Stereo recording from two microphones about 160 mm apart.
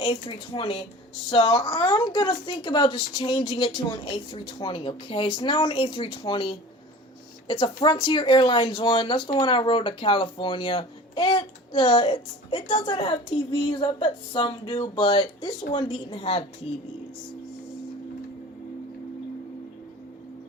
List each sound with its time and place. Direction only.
0.0 s speech: 30° left (ahead or behind)